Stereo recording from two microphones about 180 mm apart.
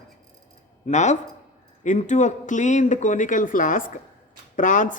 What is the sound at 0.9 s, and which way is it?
Speech, 40° left (ahead or behind).